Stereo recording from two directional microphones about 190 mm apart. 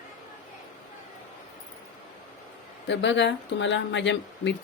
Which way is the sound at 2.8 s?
70° left (ahead or behind).